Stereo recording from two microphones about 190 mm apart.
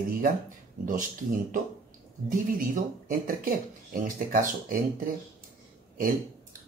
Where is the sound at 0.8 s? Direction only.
45° right (ahead or behind).